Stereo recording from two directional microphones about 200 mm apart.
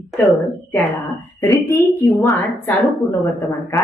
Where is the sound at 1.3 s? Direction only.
15° left (ahead or behind).